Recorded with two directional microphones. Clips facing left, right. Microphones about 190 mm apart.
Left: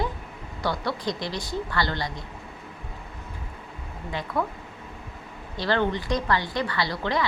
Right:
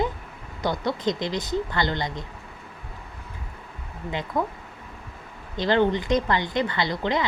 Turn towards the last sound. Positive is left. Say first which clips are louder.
# right 1 dB
turn(degrees=-20)  # may be behind; listen again after turning